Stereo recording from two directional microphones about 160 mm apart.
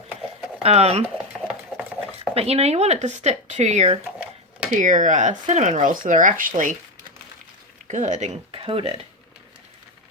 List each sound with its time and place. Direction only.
0.6 s speech: 40° right (ahead or behind)
2.3 s speech: 40° right (ahead or behind)
4.8 s speech: 55° right (ahead or behind)
7.9 s speech: 50° right (ahead or behind)